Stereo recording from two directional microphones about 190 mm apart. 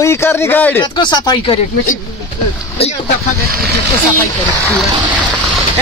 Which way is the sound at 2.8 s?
30° left (ahead or behind).